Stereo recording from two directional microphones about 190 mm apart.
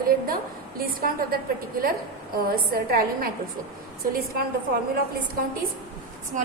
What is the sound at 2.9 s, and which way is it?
Speech, 50° right (ahead or behind).